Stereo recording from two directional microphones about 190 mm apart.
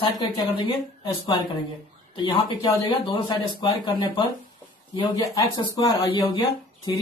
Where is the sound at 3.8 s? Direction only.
25° left (ahead or behind).